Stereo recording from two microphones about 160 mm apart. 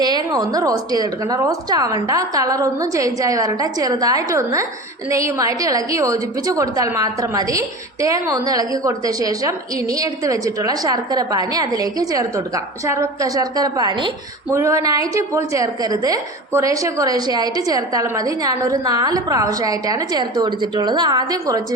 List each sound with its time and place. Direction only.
0.0 s a woman's voice: 25° right (ahead or behind)